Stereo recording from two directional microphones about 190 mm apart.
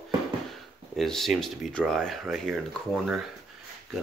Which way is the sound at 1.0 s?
Centre (ahead or behind).